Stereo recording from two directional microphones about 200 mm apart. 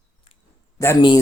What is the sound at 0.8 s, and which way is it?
Speech, 20° left (ahead or behind).